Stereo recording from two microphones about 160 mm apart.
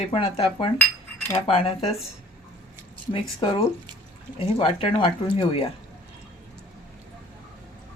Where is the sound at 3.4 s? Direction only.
35° left (ahead or behind).